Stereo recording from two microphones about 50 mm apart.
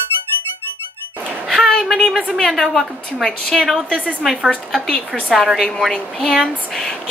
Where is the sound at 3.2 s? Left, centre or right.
Centre.